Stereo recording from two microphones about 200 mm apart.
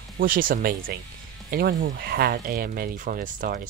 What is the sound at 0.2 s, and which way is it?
Speech, 45° right (ahead or behind).